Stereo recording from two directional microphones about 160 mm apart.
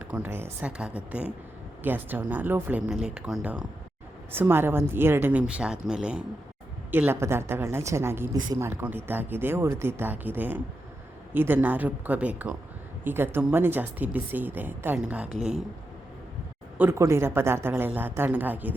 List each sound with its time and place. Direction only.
0.0 s a woman's voice: 10° right (ahead or behind)
16.7 s speech: 15° right (ahead or behind)